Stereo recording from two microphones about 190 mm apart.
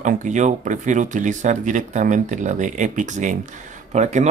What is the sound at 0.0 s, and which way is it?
Speech, 40° right (ahead or behind).